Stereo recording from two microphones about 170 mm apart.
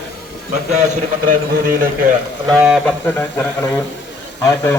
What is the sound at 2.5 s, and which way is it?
Speech, 5° right (ahead or behind).